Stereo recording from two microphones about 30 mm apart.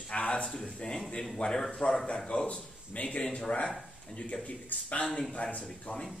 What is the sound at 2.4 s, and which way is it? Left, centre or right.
Speech, left.